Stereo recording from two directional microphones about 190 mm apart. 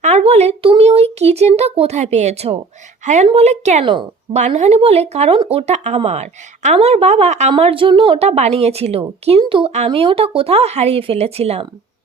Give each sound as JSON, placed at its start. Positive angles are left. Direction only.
{"t": 0.0, "sound": "speech", "side_deg": -35}